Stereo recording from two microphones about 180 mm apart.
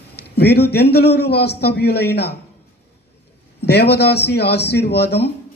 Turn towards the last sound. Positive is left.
turn(degrees=65)  # may be behind; listen again after turning